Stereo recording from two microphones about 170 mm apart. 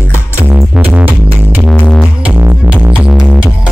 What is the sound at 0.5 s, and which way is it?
Music, 5° right (ahead or behind).